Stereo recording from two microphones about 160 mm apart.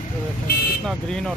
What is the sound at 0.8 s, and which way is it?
Speech, 5° left (ahead or behind).